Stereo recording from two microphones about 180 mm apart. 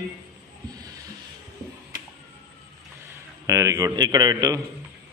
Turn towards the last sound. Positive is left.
turn(degrees=-25)  # may be behind; listen again after turning